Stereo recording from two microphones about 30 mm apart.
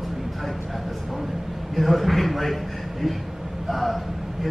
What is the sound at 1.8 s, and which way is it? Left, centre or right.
Speech, centre.